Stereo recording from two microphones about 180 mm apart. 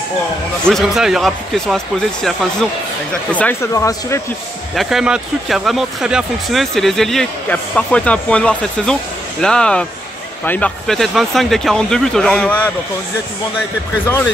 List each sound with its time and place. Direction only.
0.7 s speech: centre (ahead or behind); by 4.2 s 15° left (ahead or behind)
4.7 s speech: centre (ahead or behind)